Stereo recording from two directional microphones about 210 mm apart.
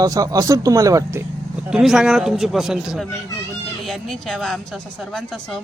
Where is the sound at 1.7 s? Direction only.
Centre (ahead or behind).